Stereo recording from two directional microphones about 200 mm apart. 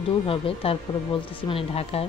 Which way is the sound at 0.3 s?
30° left (ahead or behind).